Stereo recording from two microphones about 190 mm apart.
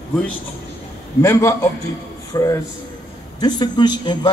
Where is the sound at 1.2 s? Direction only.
15° left (ahead or behind).